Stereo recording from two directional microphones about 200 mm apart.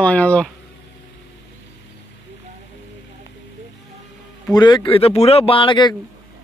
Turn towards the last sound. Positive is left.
turn(degrees=25)  # may be behind; listen again after turning